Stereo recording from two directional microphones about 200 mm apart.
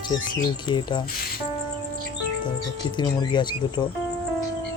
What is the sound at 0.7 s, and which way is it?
Speech, 25° left (ahead or behind).